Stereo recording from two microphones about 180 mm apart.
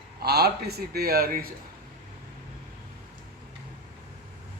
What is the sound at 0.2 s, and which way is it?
A man's voice, 60° right (ahead or behind).